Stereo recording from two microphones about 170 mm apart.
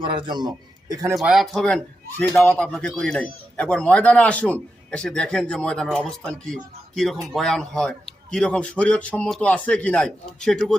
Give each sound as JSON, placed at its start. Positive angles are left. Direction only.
{"t": 0.0, "sound": "a man's voice", "side_deg": -30}
{"t": 1.1, "sound": "a man's voice", "side_deg": 0}